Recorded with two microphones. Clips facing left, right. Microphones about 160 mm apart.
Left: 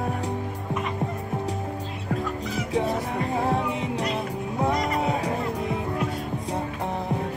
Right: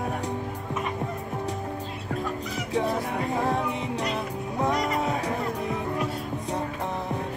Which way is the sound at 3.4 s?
10° left (ahead or behind).